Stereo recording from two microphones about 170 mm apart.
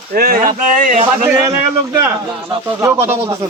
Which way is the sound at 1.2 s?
15° right (ahead or behind).